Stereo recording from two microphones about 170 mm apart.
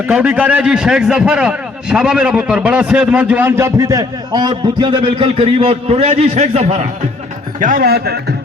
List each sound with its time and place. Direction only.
0.1 s a man's voice: 10° right (ahead or behind); by 6.8 s 40° right (ahead or behind)
7.6 s speech: 55° right (ahead or behind)